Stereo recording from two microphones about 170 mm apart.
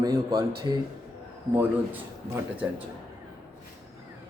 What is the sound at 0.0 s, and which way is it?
Speech, 25° right (ahead or behind).